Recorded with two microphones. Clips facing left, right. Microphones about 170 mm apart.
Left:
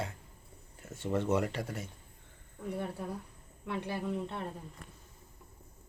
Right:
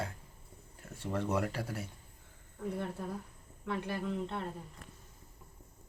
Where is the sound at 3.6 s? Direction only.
15° left (ahead or behind).